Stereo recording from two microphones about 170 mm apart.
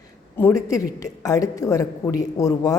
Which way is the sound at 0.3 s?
15° left (ahead or behind).